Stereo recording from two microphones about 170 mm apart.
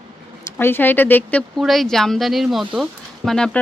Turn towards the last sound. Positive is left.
turn(degrees=5)  # may be behind; listen again after turning